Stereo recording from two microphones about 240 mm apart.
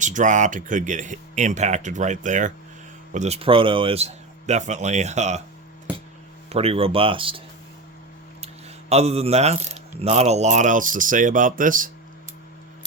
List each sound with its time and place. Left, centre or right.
0.0 s speech: right
6.5 s speech: right
8.9 s speech: right